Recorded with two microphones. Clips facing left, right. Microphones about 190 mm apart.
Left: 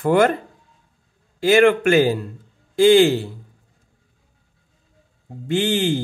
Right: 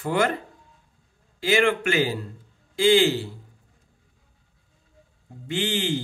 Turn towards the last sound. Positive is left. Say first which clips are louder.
# left 6 dB
turn(degrees=50)  # may be behind; listen again after turning